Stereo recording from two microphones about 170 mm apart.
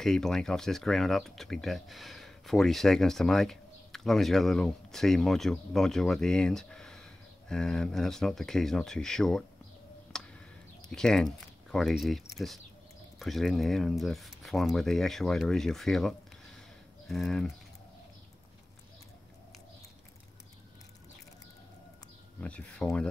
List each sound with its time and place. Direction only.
0.0 s speech: centre (ahead or behind)
10.1 s a sound: 5° left (ahead or behind)
10.9 s speech: 5° left (ahead or behind)
13.2 s speech: centre (ahead or behind)
22.4 s speech: 5° left (ahead or behind)